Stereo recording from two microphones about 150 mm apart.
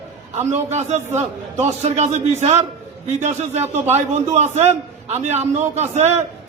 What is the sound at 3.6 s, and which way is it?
Speech, 15° right (ahead or behind).